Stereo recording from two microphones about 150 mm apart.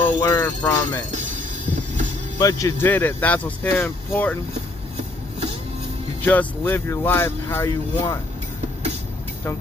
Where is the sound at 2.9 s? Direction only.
10° left (ahead or behind).